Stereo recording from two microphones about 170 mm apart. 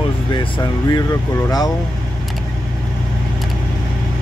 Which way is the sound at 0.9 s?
20° left (ahead or behind).